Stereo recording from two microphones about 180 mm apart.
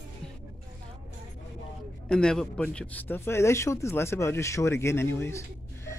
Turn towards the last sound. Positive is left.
turn(degrees=15)  # may be behind; listen again after turning